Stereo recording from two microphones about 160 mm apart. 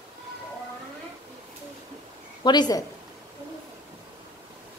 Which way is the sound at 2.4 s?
25° left (ahead or behind).